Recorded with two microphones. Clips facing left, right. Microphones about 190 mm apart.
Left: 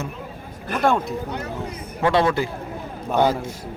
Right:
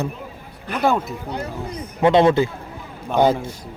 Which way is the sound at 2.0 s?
20° right (ahead or behind).